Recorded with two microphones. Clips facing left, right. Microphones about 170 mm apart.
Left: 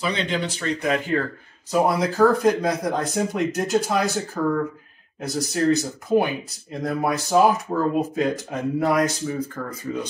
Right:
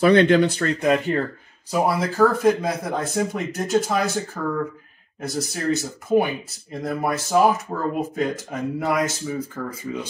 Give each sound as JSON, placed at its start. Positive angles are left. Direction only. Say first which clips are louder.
{"t": 0.0, "sound": "speech", "louder": "right 10 dB", "side_deg": -60}
{"t": 1.7, "sound": "speech", "louder": "left 1 dB", "side_deg": 0}